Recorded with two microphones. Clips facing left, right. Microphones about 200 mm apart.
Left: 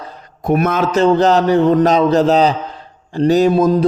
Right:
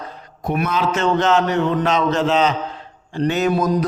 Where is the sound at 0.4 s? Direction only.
50° left (ahead or behind).